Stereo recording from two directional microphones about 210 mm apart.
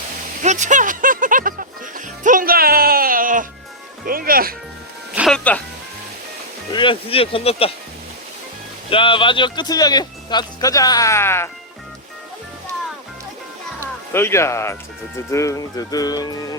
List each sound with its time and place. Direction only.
0.4 s music: 35° right (ahead or behind)
4.0 s speech: 45° right (ahead or behind)
5.1 s music: centre (ahead or behind)
6.7 s speech: 25° left (ahead or behind)
8.9 s speech: 25° left (ahead or behind)
13.7 s speech: 10° left (ahead or behind)